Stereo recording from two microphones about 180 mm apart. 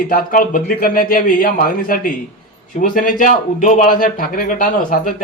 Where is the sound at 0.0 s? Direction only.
50° left (ahead or behind).